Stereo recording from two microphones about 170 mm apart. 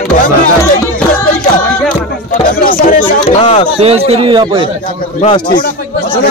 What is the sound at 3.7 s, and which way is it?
Speech, 35° right (ahead or behind).